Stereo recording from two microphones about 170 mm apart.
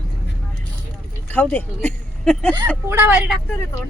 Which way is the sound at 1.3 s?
10° left (ahead or behind).